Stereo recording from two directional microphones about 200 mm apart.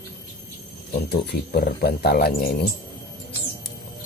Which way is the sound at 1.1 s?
55° left (ahead or behind).